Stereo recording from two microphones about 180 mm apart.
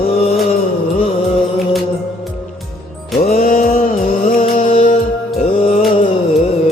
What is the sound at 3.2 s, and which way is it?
Music, 55° left (ahead or behind).